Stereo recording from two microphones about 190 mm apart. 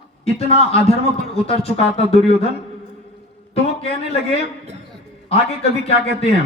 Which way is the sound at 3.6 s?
30° left (ahead or behind).